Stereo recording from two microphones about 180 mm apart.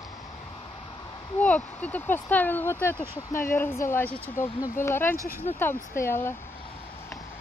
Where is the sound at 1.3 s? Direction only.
10° left (ahead or behind).